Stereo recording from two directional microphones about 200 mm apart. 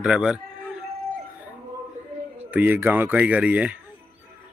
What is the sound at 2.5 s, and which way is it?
Speech, 10° right (ahead or behind).